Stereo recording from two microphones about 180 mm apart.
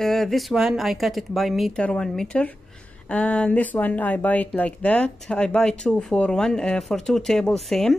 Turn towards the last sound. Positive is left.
turn(degrees=0)  # may be behind; listen again after turning